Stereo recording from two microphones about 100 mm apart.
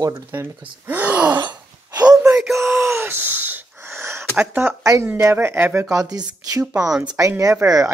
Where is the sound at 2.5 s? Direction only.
30° right (ahead or behind).